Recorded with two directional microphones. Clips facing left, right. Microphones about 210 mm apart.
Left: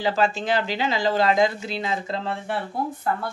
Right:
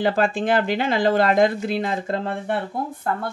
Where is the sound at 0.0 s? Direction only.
55° right (ahead or behind).